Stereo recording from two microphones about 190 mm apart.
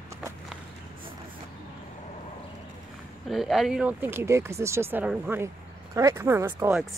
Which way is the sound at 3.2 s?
Centre (ahead or behind).